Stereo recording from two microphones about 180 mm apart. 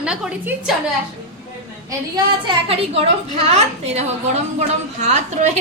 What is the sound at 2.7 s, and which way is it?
A woman's voice, 30° right (ahead or behind).